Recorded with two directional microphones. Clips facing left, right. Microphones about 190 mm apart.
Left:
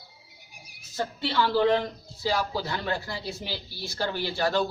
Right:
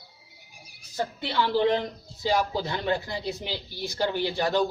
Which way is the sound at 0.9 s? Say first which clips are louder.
Even; 15° right (ahead or behind).